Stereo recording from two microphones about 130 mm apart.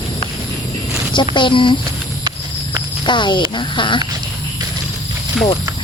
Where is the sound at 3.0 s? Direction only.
35° left (ahead or behind).